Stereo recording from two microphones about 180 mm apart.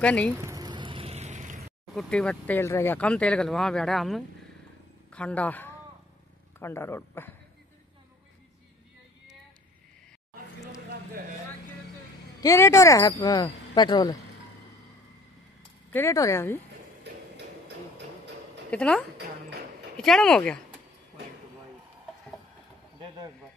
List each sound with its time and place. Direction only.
0.0 s speech: 5° left (ahead or behind)
0.3 s a sound: 15° right (ahead or behind); by 1.7 s 40° right (ahead or behind)
2.0 s speech: 5° left (ahead or behind)
12.4 s speech: 15° left (ahead or behind)
15.9 s speech: 15° left (ahead or behind)
18.7 s speech: 5° left (ahead or behind)